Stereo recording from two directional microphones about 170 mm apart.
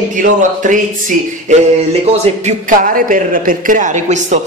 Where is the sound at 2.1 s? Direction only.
40° right (ahead or behind).